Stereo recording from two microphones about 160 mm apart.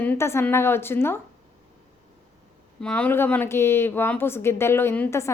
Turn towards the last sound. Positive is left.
turn(degrees=15)  # may be behind; listen again after turning